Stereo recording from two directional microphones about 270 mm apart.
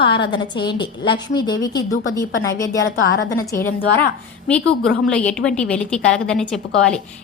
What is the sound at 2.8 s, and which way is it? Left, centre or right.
Speech, left.